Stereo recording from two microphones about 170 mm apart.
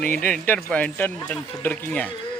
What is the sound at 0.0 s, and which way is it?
A man's voice, 10° left (ahead or behind).